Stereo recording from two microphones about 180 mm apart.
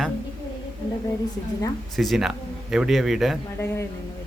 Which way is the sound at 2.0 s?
Centre (ahead or behind).